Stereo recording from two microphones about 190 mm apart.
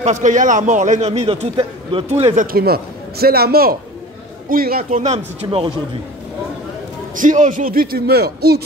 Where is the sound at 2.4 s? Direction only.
50° right (ahead or behind); by 5.7 s 30° right (ahead or behind).